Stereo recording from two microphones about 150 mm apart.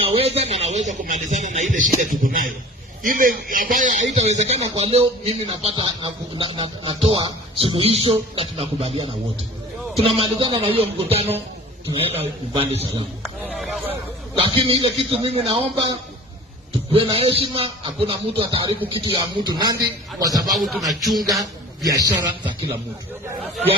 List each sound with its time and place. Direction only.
0.0 s a man's voice: 40° right (ahead or behind)
13.2 s a sound: centre (ahead or behind)
14.3 s a man's voice: 35° right (ahead or behind)
20.6 s music: centre (ahead or behind)
21.8 s a man's voice: 25° right (ahead or behind)